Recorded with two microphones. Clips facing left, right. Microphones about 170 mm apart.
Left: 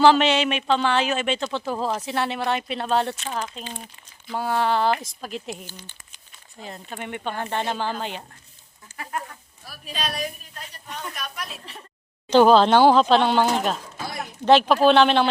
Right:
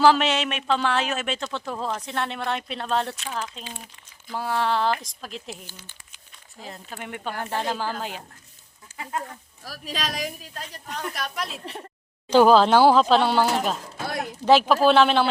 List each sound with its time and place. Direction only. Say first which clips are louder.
0.0 s speech: left 2 dB; centre (ahead or behind)
8.9 s a sound: even; 5° right (ahead or behind)
9.6 s speech: even; 90° right
10.8 s a woman's voice: right 3 dB; 80° right
12.3 s speech: left 1 dB; 5° right (ahead or behind)
14.4 s speech: left 1 dB; 5° right (ahead or behind)